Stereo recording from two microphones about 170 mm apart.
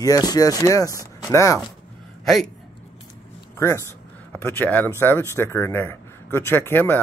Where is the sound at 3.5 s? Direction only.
15° left (ahead or behind).